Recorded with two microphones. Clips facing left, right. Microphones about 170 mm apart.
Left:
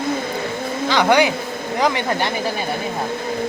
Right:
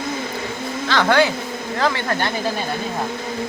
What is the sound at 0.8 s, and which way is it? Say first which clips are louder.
Speech: left 1 dB; 15° left (ahead or behind).